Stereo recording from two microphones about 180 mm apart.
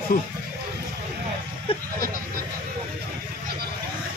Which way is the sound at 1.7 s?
30° left (ahead or behind).